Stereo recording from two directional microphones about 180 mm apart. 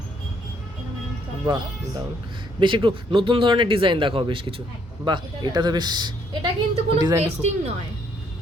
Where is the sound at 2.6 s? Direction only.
25° right (ahead or behind).